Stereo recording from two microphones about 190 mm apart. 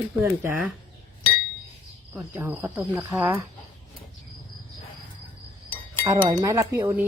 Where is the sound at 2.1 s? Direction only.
10° right (ahead or behind).